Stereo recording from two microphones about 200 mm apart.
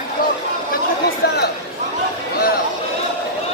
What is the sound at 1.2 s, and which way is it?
Speech, 50° left (ahead or behind).